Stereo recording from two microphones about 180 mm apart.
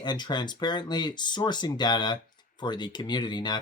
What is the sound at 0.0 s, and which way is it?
Speech, 25° left (ahead or behind).